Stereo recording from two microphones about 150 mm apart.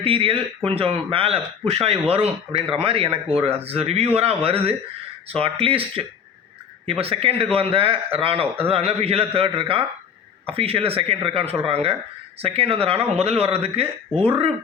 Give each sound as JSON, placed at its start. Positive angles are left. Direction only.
{"t": 0.0, "sound": "a man's voice", "side_deg": -40}